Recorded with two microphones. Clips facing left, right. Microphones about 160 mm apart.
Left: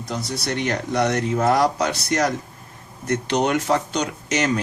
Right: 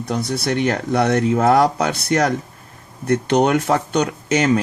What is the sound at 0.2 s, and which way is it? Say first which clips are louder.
A man's voice: right 6 dB; 55° right (ahead or behind).